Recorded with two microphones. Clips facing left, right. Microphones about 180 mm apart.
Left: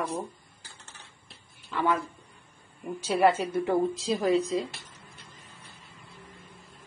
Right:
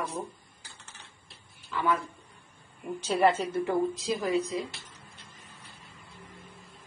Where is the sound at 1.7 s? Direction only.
25° left (ahead or behind).